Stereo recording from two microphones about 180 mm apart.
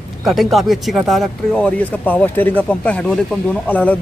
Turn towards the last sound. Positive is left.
turn(degrees=10)  # may be behind; listen again after turning